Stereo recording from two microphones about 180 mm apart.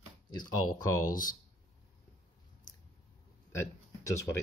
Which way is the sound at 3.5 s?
15° left (ahead or behind).